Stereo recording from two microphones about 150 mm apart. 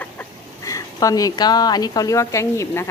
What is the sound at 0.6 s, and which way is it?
A woman's voice, 20° left (ahead or behind).